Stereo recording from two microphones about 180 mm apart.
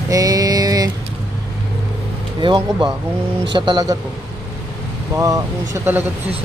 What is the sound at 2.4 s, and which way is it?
A woman's voice, 25° right (ahead or behind).